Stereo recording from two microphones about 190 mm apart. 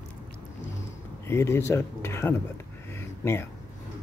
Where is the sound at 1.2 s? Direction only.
15° left (ahead or behind).